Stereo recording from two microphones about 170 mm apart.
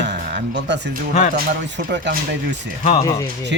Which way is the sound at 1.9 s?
90° right.